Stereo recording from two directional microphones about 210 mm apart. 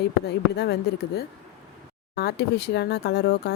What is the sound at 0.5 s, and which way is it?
Speech, 50° left (ahead or behind).